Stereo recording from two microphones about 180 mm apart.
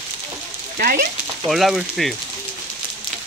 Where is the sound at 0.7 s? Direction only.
55° right (ahead or behind).